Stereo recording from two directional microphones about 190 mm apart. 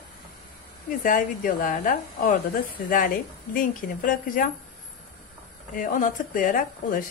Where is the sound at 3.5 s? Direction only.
45° left (ahead or behind).